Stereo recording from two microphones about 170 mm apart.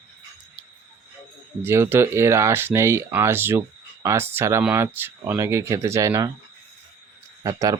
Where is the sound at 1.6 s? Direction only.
15° right (ahead or behind).